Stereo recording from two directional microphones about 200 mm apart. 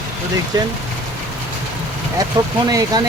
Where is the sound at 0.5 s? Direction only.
20° right (ahead or behind).